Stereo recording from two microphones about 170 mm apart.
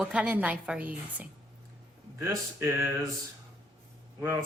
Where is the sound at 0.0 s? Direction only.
5° right (ahead or behind).